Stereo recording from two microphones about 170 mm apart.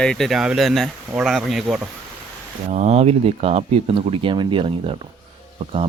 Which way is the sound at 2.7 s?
40° right (ahead or behind).